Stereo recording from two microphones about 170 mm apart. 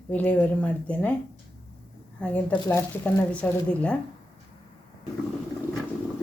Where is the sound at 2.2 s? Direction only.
5° left (ahead or behind).